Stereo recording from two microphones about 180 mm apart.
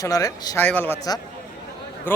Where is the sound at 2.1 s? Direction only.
10° left (ahead or behind).